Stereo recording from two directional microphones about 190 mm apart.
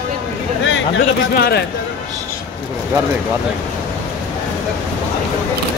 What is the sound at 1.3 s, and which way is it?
Speech, 55° left (ahead or behind).